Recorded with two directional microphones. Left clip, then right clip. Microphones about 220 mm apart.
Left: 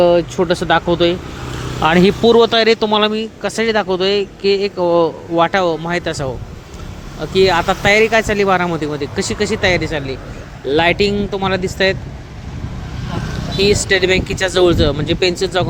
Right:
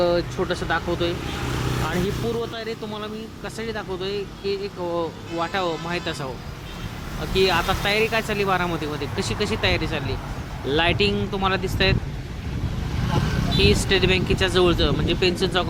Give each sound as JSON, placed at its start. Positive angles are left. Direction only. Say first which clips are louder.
{"t": 0.0, "sound": "speech", "louder": "left 9 dB", "side_deg": 30}
{"t": 13.6, "sound": "speech", "louder": "left 7 dB", "side_deg": 25}